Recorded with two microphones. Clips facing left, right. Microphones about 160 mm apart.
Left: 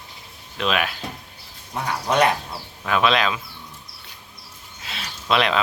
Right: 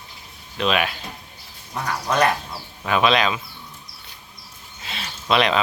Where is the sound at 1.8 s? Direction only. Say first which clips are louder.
Left 1 dB; 20° left (ahead or behind).